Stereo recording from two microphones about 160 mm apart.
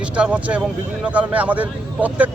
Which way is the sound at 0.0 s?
10° right (ahead or behind).